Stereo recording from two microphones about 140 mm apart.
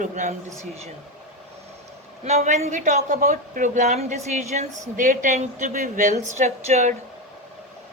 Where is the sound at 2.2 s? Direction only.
55° right (ahead or behind).